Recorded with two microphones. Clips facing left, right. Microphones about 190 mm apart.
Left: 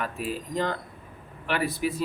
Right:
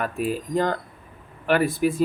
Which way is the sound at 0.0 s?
50° right (ahead or behind).